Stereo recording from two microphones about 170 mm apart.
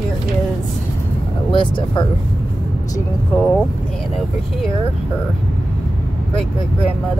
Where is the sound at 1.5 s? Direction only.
30° left (ahead or behind).